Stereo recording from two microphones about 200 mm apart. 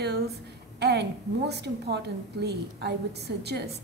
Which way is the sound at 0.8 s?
55° right (ahead or behind).